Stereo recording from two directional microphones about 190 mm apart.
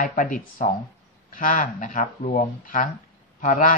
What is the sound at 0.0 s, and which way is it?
Speech, 45° left (ahead or behind).